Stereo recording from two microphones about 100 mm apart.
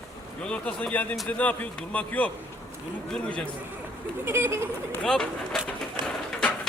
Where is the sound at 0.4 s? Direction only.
10° left (ahead or behind).